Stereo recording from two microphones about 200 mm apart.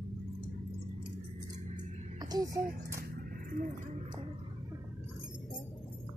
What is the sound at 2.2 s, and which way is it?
Speech, 20° right (ahead or behind).